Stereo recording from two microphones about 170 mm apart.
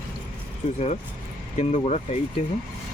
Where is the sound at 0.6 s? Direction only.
40° left (ahead or behind).